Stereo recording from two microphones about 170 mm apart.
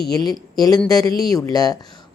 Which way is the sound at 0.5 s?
20° left (ahead or behind).